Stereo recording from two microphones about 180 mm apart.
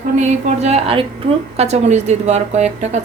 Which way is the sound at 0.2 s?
40° right (ahead or behind).